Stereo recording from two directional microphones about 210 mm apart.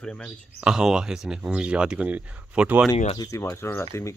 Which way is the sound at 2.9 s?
25° left (ahead or behind).